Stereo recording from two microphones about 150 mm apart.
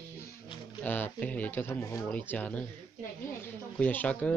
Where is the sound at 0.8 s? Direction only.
10° left (ahead or behind).